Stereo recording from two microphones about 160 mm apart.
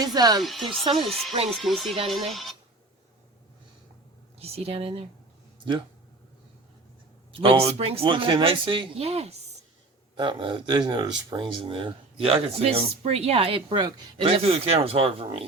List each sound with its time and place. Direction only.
0.0 s speech: 25° right (ahead or behind)
0.3 s speech: centre (ahead or behind)
4.4 s speech: 40° right (ahead or behind)
7.3 s speech: 35° right (ahead or behind)
10.2 s speech: 30° right (ahead or behind)